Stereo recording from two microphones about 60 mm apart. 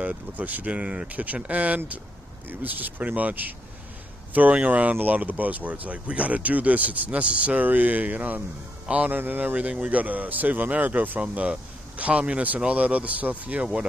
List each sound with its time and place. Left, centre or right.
0.0 s a man's voice: right
9.1 s speech: right